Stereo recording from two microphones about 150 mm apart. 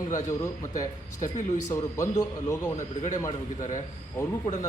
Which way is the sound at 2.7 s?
55° left (ahead or behind).